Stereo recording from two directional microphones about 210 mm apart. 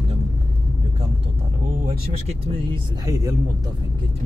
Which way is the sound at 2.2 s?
20° right (ahead or behind).